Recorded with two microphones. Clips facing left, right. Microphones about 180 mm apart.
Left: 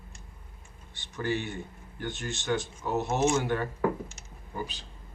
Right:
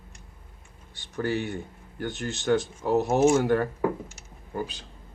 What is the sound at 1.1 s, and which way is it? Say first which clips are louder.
Speech: right 3 dB; 45° right (ahead or behind).